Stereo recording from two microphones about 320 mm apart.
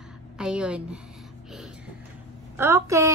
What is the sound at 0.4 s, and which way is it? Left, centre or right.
Speech, centre.